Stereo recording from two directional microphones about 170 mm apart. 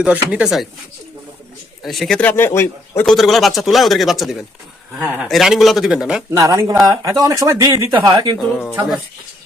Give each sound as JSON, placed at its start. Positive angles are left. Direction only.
{"t": 0.0, "sound": "speech", "side_deg": -5}
{"t": 1.8, "sound": "speech", "side_deg": 0}
{"t": 3.1, "sound": "speech", "side_deg": 0}
{"t": 6.3, "sound": "speech", "side_deg": -20}